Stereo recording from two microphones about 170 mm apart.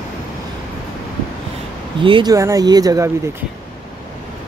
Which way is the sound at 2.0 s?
25° right (ahead or behind).